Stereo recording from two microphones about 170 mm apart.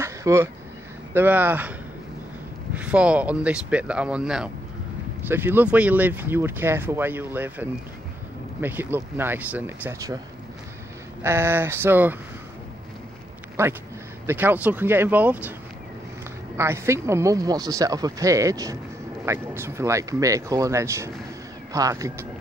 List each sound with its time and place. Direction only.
0.0 s a sound: 15° right (ahead or behind)
1.1 s speech: 10° right (ahead or behind)
11.2 s speech: 15° right (ahead or behind)
13.6 s speech: 15° right (ahead or behind)
16.5 s speech: 15° right (ahead or behind)